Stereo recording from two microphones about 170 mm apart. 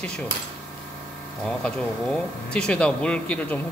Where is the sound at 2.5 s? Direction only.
5° left (ahead or behind).